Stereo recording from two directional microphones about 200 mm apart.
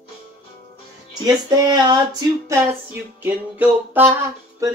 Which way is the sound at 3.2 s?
10° right (ahead or behind).